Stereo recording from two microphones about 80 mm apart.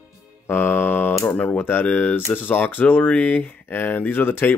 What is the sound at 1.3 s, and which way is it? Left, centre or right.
Speech, centre.